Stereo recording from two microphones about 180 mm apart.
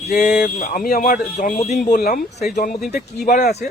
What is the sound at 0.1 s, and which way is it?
A man's voice, 45° left (ahead or behind).